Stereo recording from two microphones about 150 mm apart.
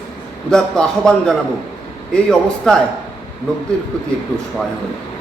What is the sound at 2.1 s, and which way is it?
Speech, 5° left (ahead or behind).